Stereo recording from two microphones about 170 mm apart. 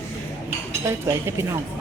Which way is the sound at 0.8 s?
15° right (ahead or behind).